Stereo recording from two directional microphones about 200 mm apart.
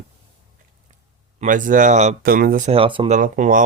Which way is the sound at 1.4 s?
40° right (ahead or behind).